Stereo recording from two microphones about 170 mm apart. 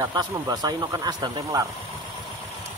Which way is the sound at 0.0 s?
20° right (ahead or behind).